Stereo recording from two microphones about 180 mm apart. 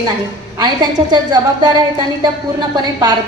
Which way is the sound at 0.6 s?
25° right (ahead or behind).